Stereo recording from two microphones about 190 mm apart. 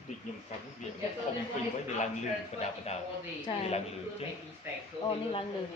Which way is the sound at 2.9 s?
35° left (ahead or behind).